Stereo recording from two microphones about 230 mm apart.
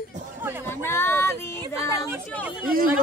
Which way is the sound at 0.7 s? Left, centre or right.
Centre.